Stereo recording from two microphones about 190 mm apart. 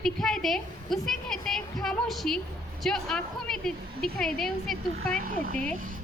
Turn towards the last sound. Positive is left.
turn(degrees=-45)  # may be behind; listen again after turning